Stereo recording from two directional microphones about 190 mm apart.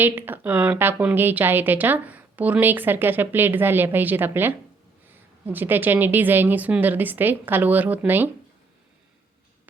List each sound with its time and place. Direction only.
0.0 s a woman's voice: 10° right (ahead or behind)